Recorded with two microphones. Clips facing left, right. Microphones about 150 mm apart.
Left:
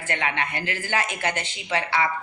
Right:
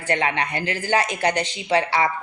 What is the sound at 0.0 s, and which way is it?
A woman's voice, 35° right (ahead or behind).